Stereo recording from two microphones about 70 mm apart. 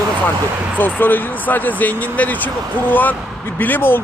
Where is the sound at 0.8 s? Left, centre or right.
Left.